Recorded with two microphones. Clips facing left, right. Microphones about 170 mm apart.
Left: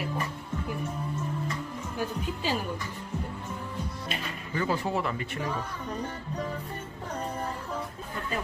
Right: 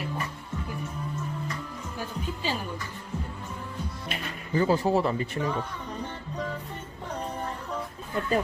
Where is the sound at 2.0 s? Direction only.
10° left (ahead or behind).